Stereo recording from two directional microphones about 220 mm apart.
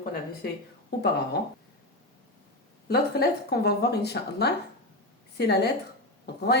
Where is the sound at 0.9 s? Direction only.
50° left (ahead or behind).